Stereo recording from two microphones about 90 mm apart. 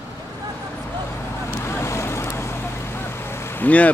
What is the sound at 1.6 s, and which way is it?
Vehicle, 30° left (ahead or behind).